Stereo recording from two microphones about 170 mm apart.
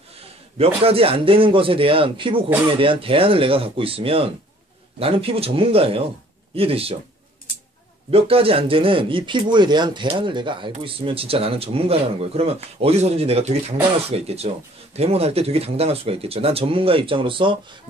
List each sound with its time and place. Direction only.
0.6 s speech: 35° right (ahead or behind)
8.1 s speech: 35° right (ahead or behind)